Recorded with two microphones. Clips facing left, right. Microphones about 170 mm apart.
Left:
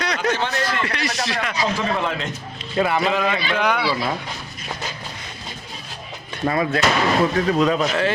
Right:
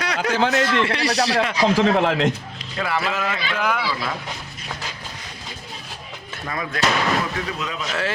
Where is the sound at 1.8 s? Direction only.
80° right.